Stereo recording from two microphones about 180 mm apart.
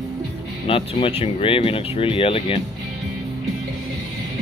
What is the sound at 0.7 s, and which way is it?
Speech, 30° left (ahead or behind).